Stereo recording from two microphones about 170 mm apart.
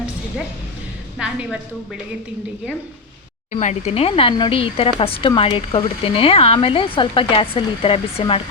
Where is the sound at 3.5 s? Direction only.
45° left (ahead or behind).